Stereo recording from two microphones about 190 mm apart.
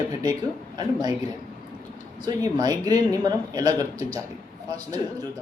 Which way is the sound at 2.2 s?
20° right (ahead or behind).